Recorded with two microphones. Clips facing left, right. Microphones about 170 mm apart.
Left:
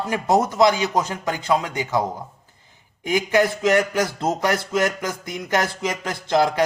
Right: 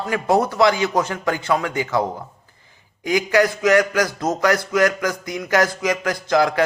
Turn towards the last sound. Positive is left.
turn(degrees=20)  # may be behind; listen again after turning